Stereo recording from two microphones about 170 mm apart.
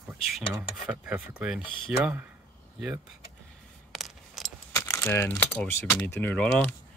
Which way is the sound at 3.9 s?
Centre (ahead or behind).